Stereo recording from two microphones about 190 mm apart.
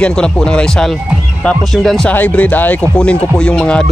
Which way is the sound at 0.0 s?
5° left (ahead or behind).